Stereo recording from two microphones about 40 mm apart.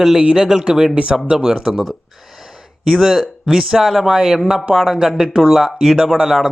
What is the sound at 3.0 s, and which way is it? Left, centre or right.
Speech, centre.